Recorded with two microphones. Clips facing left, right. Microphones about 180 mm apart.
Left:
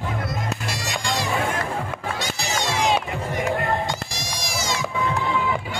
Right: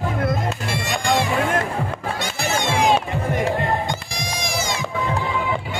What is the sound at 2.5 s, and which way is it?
Music, 55° right (ahead or behind).